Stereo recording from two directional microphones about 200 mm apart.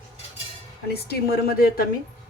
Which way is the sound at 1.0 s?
50° left (ahead or behind).